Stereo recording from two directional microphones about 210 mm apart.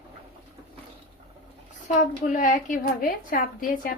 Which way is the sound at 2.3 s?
40° left (ahead or behind).